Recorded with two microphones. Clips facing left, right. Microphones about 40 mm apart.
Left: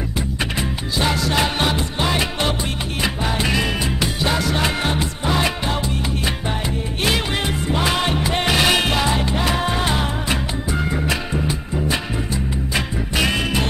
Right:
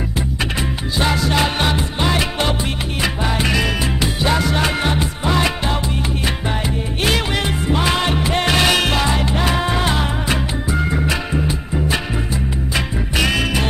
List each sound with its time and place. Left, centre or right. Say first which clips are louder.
0.9 s music: right 2 dB; centre
7.7 s music: right 2 dB; centre
12.7 s music: right 1 dB; centre